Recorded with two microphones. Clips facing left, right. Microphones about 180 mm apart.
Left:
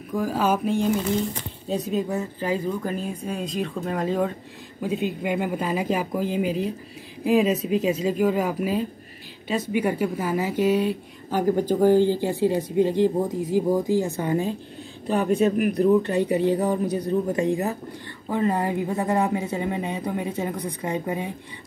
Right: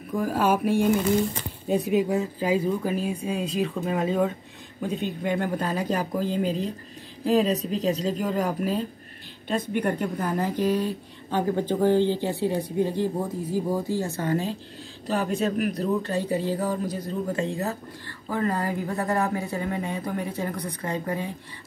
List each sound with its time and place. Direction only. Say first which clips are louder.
0.1 s speech: even; centre (ahead or behind)
1.7 s speech: right 3 dB; 15° right (ahead or behind); by 14.5 s 15° left (ahead or behind)
15.5 s a woman's voice: left 6 dB; 15° left (ahead or behind)